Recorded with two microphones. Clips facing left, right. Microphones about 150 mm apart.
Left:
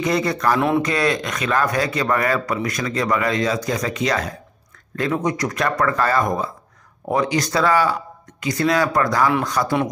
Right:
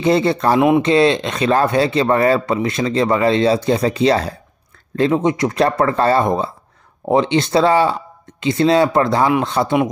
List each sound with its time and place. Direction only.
0.0 s speech: 30° right (ahead or behind)
0.6 s speech: 15° right (ahead or behind)